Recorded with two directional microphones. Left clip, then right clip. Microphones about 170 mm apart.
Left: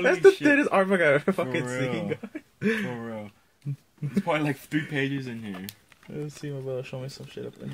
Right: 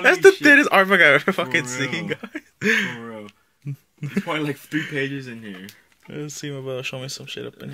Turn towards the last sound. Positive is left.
turn(degrees=-15)  # may be behind; listen again after turning